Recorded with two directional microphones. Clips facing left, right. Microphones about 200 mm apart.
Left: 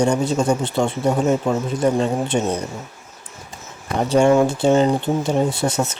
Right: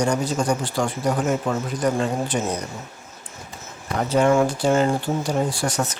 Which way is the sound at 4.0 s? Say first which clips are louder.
Left 3 dB; 30° left (ahead or behind).